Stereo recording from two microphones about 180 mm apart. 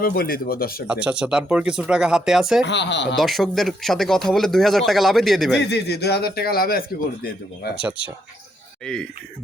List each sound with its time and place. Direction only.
0.0 s speech: 55° left (ahead or behind)
0.9 s speech: 5° right (ahead or behind)
2.6 s speech: 75° left (ahead or behind)
3.2 s speech: centre (ahead or behind)
5.6 s speech: 70° left (ahead or behind)